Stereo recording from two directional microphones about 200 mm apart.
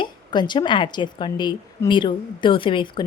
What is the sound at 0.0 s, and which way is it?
A woman's voice, 20° left (ahead or behind).